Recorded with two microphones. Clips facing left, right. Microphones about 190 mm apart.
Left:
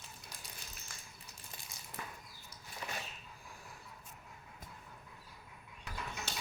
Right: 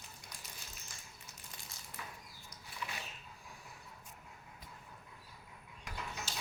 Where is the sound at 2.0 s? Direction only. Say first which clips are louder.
Left 2 dB; 50° left (ahead or behind).